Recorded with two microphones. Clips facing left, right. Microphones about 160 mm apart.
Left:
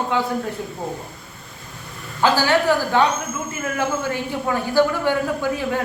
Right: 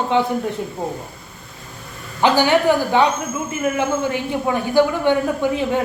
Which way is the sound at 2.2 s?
20° right (ahead or behind).